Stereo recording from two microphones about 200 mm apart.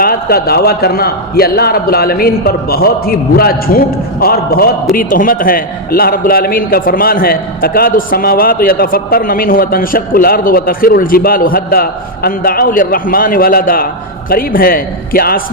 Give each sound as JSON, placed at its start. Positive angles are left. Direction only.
{"t": 0.0, "sound": "a man's voice", "side_deg": 50}